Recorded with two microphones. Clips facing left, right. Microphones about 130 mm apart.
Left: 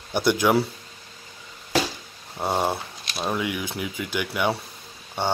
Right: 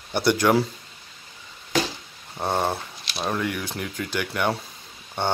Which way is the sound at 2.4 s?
10° left (ahead or behind).